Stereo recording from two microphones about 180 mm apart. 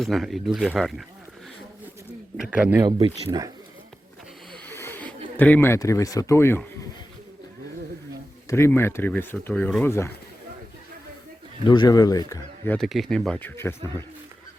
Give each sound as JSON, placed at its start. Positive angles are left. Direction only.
{"t": 0.0, "sound": "a man's voice", "side_deg": 0}
{"t": 2.4, "sound": "a man's voice", "side_deg": -5}
{"t": 3.2, "sound": "speech", "side_deg": -20}
{"t": 4.5, "sound": "a sound", "side_deg": 10}
{"t": 8.4, "sound": "speech", "side_deg": 15}
{"t": 11.6, "sound": "speech", "side_deg": 25}
{"t": 12.7, "sound": "a man's voice", "side_deg": 0}